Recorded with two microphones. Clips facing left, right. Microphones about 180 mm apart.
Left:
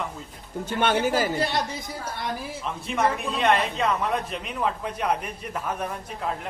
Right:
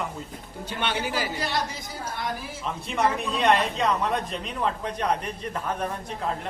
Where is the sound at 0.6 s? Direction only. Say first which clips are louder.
Left 6 dB; 50° left (ahead or behind).